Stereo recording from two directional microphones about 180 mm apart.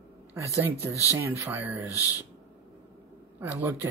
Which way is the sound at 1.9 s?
20° left (ahead or behind).